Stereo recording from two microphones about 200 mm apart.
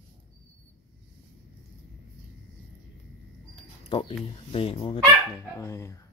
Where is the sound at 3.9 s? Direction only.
30° left (ahead or behind).